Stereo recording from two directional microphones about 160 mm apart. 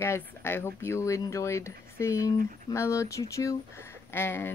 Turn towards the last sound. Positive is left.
turn(degrees=15)  # may be behind; listen again after turning